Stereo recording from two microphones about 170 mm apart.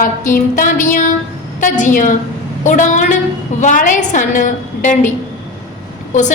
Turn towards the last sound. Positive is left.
turn(degrees=45)  # may be behind; listen again after turning